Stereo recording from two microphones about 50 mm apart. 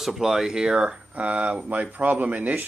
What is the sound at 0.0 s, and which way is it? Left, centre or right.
Speech, centre.